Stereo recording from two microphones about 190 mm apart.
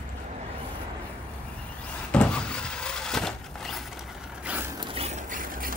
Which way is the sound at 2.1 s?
5° left (ahead or behind).